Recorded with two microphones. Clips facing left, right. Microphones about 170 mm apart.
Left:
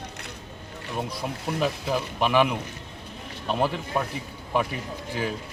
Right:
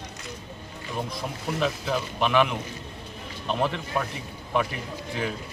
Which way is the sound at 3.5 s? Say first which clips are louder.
Left 1 dB; 5° left (ahead or behind).